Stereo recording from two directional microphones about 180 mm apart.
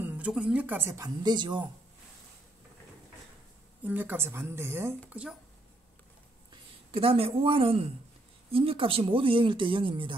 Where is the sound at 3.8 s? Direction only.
10° right (ahead or behind).